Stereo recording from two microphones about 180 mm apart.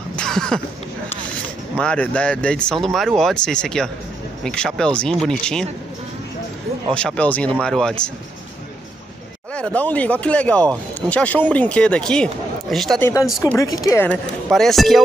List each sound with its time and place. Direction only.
0.1 s a sound: 5° left (ahead or behind)
1.8 s speech: 5° left (ahead or behind)
6.9 s speech: 5° left (ahead or behind)
9.5 s speech: 5° left (ahead or behind)
13.0 s speech: 15° left (ahead or behind)
14.0 s speech: centre (ahead or behind)